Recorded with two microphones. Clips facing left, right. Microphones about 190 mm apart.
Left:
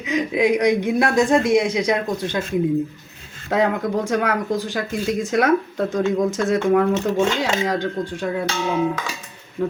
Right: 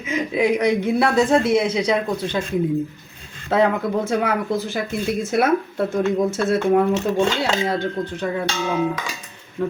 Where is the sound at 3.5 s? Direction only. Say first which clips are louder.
Right 1 dB; 15° left (ahead or behind).